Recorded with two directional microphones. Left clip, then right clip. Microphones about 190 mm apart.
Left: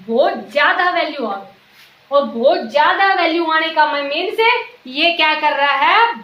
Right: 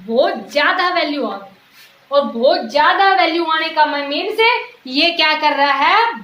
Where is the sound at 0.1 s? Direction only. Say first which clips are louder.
Even; 20° right (ahead or behind).